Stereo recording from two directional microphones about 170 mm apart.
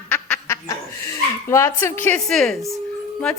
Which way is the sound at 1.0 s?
15° left (ahead or behind).